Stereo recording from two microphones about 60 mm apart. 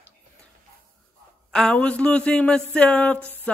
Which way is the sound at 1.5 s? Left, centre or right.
Centre.